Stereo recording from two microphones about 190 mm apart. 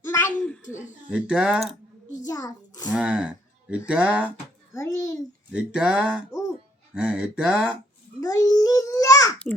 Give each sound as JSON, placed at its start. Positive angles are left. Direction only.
{"t": 0.0, "sound": "a sound", "side_deg": 10}
{"t": 1.1, "sound": "speech", "side_deg": -5}
{"t": 2.2, "sound": "a child's voice", "side_deg": 20}
{"t": 2.9, "sound": "speech", "side_deg": -5}
{"t": 4.7, "sound": "a child's voice", "side_deg": 15}
{"t": 5.5, "sound": "speech", "side_deg": -5}
{"t": 8.2, "sound": "babbling", "side_deg": 20}